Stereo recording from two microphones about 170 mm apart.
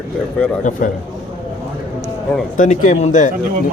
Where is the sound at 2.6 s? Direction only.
50° left (ahead or behind).